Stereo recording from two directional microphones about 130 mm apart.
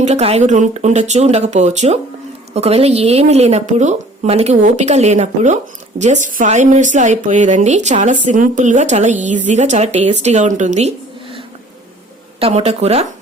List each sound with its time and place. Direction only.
0.0 s a woman's voice: 55° right (ahead or behind)
8.3 s a woman's voice: 75° right (ahead or behind)
12.4 s speech: 50° right (ahead or behind)